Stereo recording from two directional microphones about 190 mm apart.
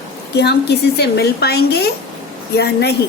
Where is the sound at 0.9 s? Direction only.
60° left (ahead or behind).